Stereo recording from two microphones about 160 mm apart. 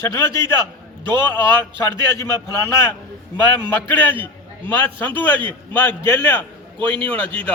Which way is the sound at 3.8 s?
10° left (ahead or behind).